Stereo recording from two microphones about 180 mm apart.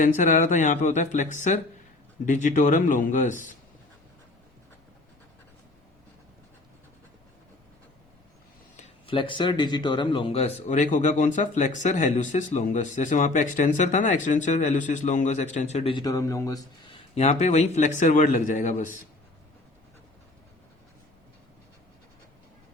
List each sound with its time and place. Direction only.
0.0 s speech: 45° left (ahead or behind)
9.0 s speech: 25° left (ahead or behind)
17.2 s speech: 40° left (ahead or behind)